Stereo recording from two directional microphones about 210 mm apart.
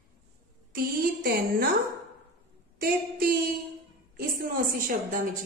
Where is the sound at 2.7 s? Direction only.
45° right (ahead or behind).